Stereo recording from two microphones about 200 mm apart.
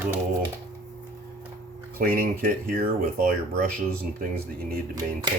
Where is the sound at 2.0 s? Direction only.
45° right (ahead or behind).